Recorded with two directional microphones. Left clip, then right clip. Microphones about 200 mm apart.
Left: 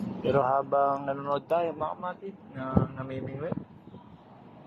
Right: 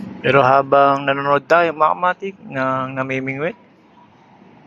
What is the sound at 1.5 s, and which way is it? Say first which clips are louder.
A man's voice: right 15 dB; 20° right (ahead or behind).